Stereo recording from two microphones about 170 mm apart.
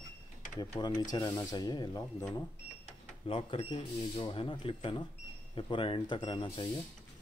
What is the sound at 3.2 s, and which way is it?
Speech, 35° left (ahead or behind).